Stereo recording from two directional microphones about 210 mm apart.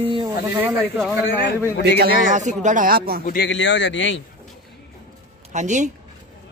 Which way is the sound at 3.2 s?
50° left (ahead or behind).